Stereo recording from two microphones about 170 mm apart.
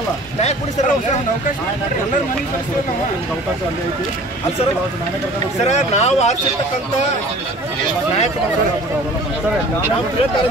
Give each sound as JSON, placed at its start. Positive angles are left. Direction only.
{"t": 5.7, "sound": "speech", "side_deg": 40}